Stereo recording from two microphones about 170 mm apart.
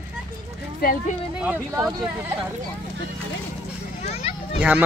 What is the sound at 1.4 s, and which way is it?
Speech, 10° right (ahead or behind).